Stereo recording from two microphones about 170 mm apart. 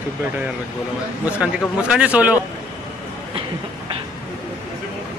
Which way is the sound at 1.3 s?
5° right (ahead or behind).